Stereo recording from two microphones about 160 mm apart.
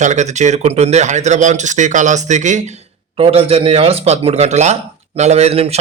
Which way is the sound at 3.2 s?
40° right (ahead or behind).